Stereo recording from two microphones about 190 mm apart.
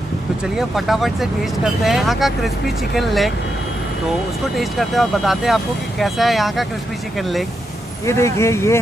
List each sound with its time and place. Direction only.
0.6 s speech: centre (ahead or behind)
4.6 s speech: centre (ahead or behind)
8.0 s speech: 15° left (ahead or behind)